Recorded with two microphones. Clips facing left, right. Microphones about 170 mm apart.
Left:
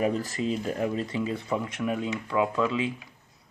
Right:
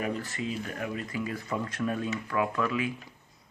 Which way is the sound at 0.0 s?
35° left (ahead or behind).